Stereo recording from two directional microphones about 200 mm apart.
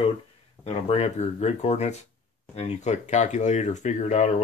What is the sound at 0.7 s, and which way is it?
Speech, 30° left (ahead or behind).